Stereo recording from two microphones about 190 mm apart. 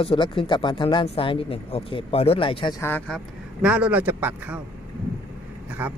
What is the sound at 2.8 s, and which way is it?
Speech, 10° left (ahead or behind).